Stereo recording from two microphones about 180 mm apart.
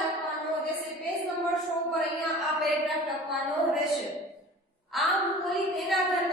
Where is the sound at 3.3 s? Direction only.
Centre (ahead or behind).